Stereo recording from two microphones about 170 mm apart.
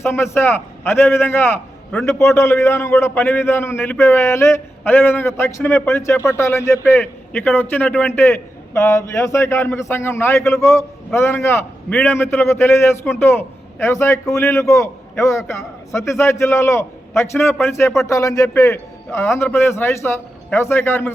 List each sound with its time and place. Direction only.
0.0 s a man's voice: 15° left (ahead or behind)